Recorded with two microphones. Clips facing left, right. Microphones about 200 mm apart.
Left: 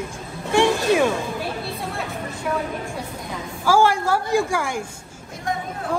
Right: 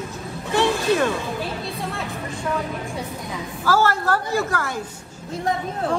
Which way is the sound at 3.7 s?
10° left (ahead or behind).